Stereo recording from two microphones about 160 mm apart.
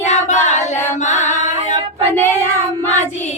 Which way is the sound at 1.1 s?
50° left (ahead or behind).